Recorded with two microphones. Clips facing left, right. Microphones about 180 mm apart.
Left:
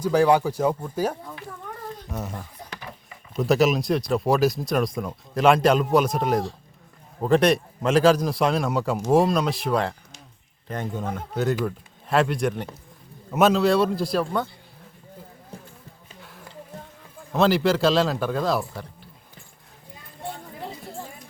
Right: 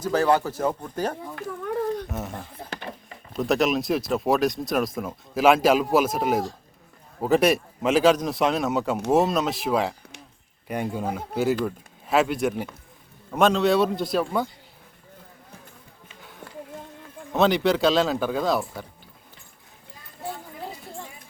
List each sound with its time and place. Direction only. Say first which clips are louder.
0.0 s speech: left 3 dB; 10° left (ahead or behind)
2.6 s a sound: right 4 dB; 25° right (ahead or behind)
3.3 s speech: left 2 dB; centre (ahead or behind)
17.3 s speech: even; centre (ahead or behind)